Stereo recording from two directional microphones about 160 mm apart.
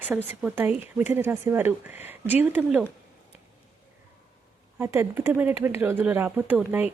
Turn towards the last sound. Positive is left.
turn(degrees=-10)  # may be behind; listen again after turning